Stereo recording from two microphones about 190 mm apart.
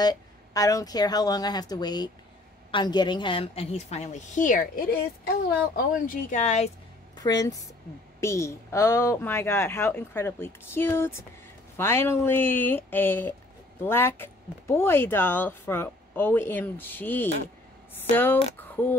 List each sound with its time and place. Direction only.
0.0 s a woman's voice: 20° left (ahead or behind); by 6.7 s 35° left (ahead or behind)
7.2 s speech: 20° left (ahead or behind)